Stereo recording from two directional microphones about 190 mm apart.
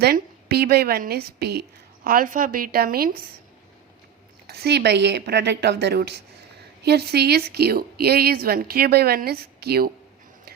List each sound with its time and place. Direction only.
0.0 s a woman's voice: 55° right (ahead or behind)
2.0 s a woman's voice: 45° right (ahead or behind)
4.4 s a woman's voice: 60° right (ahead or behind)